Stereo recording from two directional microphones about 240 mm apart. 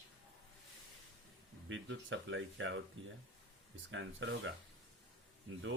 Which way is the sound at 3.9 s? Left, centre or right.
Right.